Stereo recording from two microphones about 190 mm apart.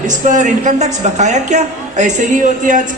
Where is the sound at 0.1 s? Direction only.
40° right (ahead or behind).